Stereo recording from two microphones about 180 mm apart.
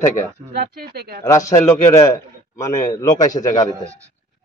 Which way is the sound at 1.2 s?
20° left (ahead or behind).